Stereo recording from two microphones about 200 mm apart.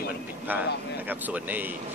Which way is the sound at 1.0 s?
10° right (ahead or behind).